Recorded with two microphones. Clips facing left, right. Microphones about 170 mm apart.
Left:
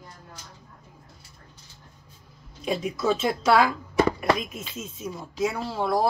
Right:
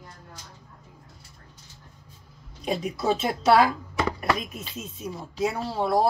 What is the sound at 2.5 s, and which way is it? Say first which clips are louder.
A woman's voice: left 1 dB; 40° right (ahead or behind).